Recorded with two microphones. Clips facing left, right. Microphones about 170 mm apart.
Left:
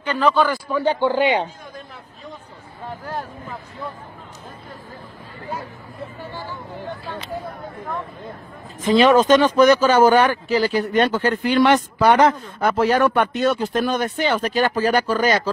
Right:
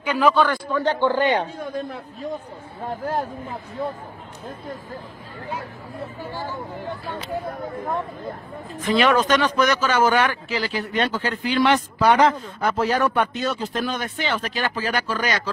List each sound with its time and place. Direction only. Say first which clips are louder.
0.0 s a man's voice: even; 10° right (ahead or behind); by 1.4 s 10° left (ahead or behind)
8.8 s speech: left 5 dB; 20° left (ahead or behind); by 15.5 s 40° left (ahead or behind)